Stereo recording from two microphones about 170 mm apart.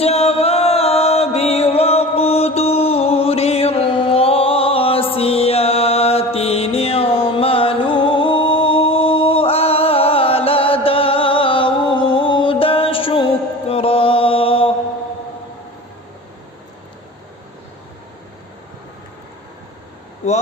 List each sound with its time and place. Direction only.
0.0 s music: 35° left (ahead or behind)